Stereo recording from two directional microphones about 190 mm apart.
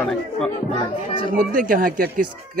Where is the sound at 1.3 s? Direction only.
50° right (ahead or behind).